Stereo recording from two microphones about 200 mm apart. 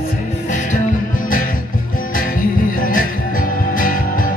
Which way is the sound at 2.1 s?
45° left (ahead or behind).